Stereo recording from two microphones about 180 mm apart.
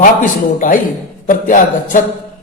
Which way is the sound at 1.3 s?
50° left (ahead or behind).